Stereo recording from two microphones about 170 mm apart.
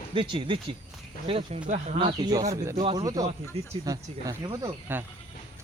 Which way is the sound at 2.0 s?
25° right (ahead or behind).